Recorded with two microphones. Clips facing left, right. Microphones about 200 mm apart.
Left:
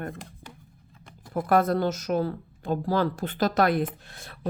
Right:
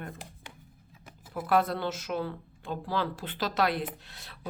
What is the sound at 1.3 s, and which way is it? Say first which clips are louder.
Speech: left 5 dB; 45° left (ahead or behind).